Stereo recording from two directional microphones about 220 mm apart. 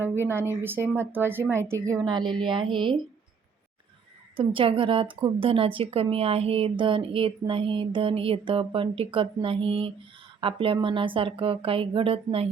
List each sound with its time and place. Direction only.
0.0 s a woman's voice: 10° right (ahead or behind)
4.4 s a woman's voice: 25° right (ahead or behind)